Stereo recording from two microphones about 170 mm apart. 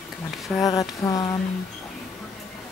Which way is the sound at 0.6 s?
20° left (ahead or behind).